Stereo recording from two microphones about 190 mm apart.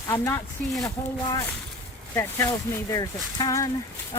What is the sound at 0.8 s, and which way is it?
Speech, 15° left (ahead or behind).